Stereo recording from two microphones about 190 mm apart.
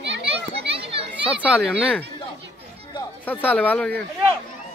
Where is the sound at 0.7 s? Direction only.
30° right (ahead or behind).